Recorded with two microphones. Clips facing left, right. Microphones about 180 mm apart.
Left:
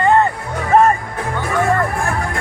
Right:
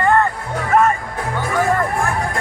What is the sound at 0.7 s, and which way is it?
Music, 30° left (ahead or behind).